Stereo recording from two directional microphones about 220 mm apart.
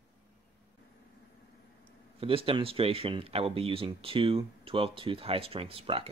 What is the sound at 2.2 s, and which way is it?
Speech, 25° right (ahead or behind).